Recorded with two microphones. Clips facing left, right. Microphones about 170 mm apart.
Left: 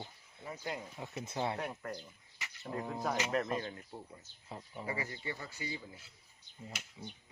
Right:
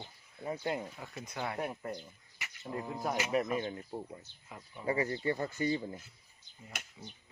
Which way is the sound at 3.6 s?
25° right (ahead or behind).